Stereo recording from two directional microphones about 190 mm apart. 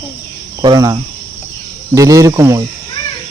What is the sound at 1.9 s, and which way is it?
Speech, 15° right (ahead or behind).